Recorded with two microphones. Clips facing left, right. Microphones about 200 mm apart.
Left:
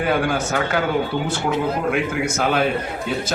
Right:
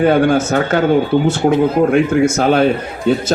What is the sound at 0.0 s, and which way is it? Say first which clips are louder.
A man's voice: right 9 dB; 40° right (ahead or behind).